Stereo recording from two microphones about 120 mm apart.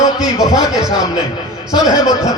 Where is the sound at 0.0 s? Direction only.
30° left (ahead or behind).